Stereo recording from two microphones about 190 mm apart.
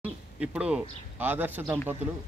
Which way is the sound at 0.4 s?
5° right (ahead or behind).